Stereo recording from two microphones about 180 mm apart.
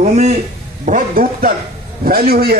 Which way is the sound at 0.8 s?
50° right (ahead or behind).